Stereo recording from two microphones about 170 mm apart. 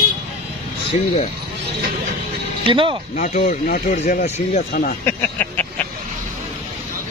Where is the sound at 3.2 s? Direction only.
50° left (ahead or behind).